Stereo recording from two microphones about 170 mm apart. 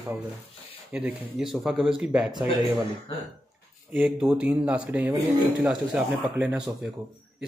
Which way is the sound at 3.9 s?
5° right (ahead or behind).